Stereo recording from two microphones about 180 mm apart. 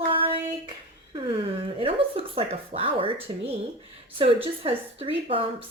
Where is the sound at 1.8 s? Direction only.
30° right (ahead or behind).